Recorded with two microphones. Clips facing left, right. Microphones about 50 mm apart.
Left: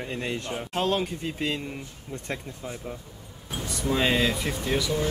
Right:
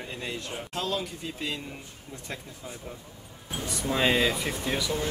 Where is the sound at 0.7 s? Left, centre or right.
Left.